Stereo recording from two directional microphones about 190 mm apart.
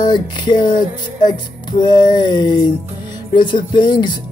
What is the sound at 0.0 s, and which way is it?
Music, 20° left (ahead or behind).